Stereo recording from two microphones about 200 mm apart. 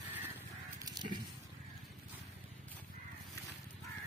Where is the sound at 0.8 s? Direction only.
20° right (ahead or behind).